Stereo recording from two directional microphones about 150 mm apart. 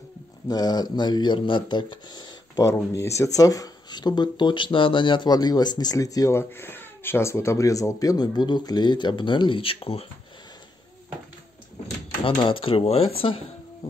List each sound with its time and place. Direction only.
0.5 s speech: 25° left (ahead or behind)
12.2 s dishes: 35° left (ahead or behind)